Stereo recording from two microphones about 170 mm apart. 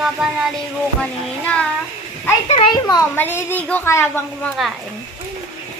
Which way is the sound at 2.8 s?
20° left (ahead or behind).